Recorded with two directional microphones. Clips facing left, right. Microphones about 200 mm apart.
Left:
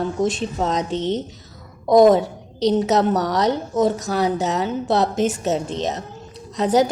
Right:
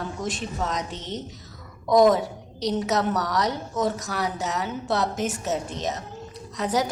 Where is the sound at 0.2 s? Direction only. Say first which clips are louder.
Left 7 dB; 25° left (ahead or behind).